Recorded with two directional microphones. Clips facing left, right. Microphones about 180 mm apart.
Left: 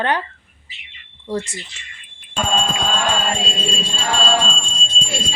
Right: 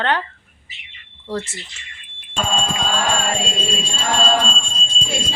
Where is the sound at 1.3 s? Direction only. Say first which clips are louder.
Left 2 dB; 10° left (ahead or behind).